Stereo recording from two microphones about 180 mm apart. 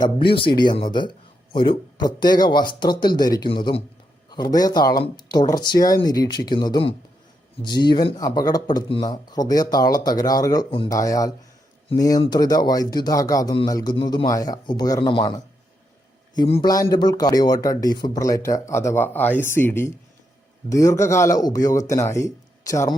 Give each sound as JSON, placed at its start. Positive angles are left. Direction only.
{"t": 0.5, "sound": "a man's voice", "side_deg": 25}
{"t": 16.6, "sound": "speech", "side_deg": 20}